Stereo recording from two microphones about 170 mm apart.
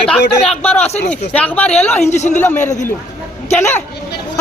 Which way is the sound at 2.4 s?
10° left (ahead or behind).